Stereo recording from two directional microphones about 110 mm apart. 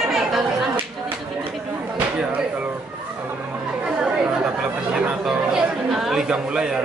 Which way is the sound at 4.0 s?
10° right (ahead or behind).